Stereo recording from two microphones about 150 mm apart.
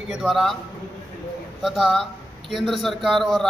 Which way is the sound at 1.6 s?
Centre (ahead or behind).